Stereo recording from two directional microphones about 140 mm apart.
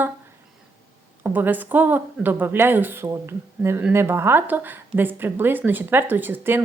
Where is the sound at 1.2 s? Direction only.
15° right (ahead or behind).